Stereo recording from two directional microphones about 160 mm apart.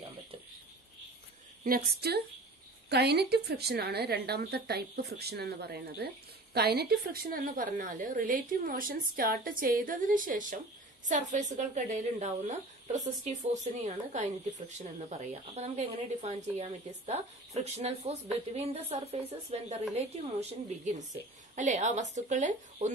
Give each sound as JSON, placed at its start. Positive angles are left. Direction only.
{"t": 1.6, "sound": "a woman's voice", "side_deg": -60}
{"t": 2.0, "sound": "a woman's voice", "side_deg": -90}